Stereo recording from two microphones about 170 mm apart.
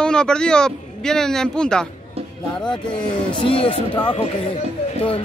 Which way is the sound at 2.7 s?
30° left (ahead or behind).